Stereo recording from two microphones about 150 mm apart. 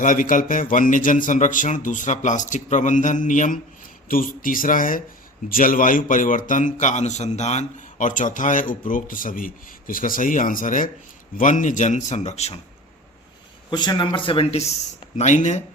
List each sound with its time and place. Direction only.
0.0 s speech: 60° left (ahead or behind)
13.7 s speech: 30° left (ahead or behind); by 15.6 s 55° left (ahead or behind)